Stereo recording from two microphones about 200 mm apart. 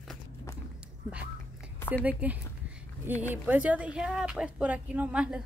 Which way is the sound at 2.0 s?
10° right (ahead or behind).